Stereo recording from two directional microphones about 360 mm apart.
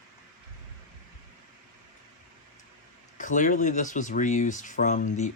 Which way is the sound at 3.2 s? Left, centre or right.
Left.